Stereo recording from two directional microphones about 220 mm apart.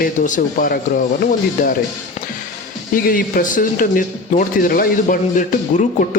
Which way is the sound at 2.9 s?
40° left (ahead or behind).